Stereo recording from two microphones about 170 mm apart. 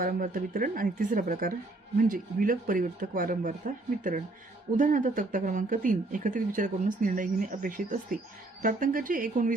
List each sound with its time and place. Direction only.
0.0 s speech: 55° right (ahead or behind)
4.8 s speech: 50° right (ahead or behind)